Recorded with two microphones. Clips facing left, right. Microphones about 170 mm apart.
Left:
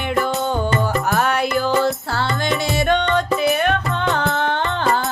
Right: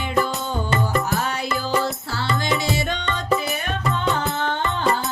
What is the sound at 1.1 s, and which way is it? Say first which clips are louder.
Music: left 6 dB; 65° left (ahead or behind).